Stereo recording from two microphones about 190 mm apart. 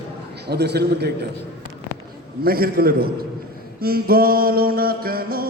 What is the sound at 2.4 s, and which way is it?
Mantra, 50° right (ahead or behind).